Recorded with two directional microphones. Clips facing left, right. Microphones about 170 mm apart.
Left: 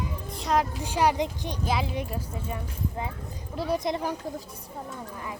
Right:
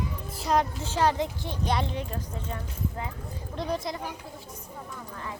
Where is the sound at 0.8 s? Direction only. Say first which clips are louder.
Left 1 dB; 15° left (ahead or behind).